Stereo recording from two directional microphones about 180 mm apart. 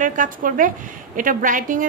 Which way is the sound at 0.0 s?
45° right (ahead or behind).